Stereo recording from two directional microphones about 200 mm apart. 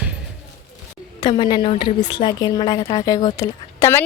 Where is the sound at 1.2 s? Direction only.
20° left (ahead or behind).